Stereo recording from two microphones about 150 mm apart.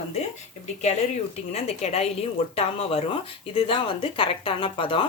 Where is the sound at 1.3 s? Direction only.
45° left (ahead or behind).